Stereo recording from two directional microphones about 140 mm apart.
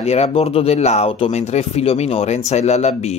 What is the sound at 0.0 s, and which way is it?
Speech, 50° left (ahead or behind).